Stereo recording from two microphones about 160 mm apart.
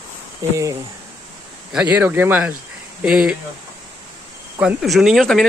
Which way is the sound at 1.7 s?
10° right (ahead or behind).